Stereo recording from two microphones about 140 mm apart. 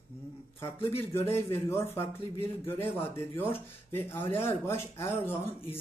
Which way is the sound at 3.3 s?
15° left (ahead or behind).